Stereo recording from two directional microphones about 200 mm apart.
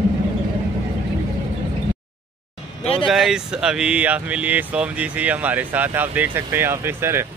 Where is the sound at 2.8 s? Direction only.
30° left (ahead or behind).